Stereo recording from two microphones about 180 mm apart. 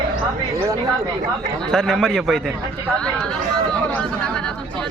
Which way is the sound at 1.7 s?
5° left (ahead or behind).